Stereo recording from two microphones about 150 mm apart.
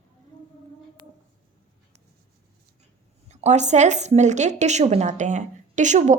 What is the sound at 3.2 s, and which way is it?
Speech, 50° right (ahead or behind).